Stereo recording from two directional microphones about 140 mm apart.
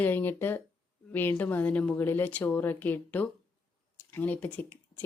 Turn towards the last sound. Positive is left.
turn(degrees=15)  # may be behind; listen again after turning